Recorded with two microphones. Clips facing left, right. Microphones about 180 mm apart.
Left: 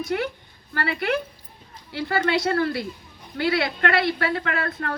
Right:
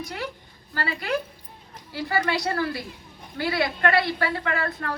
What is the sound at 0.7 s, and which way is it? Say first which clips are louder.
A woman's voice: left 3 dB; 60° left (ahead or behind).